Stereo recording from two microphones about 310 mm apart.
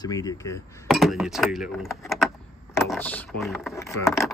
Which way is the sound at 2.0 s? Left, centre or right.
Centre.